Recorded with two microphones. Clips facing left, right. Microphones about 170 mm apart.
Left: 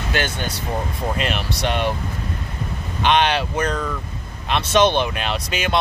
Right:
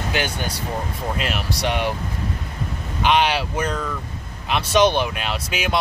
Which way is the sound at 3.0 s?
10° right (ahead or behind).